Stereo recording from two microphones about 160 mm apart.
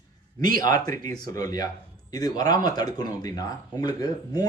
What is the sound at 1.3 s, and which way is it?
Speech, 20° left (ahead or behind).